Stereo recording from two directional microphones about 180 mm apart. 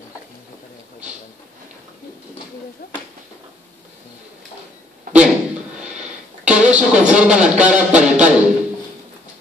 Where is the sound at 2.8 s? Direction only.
50° left (ahead or behind).